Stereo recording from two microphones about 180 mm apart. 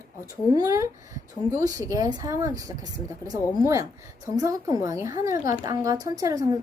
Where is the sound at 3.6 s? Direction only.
20° right (ahead or behind).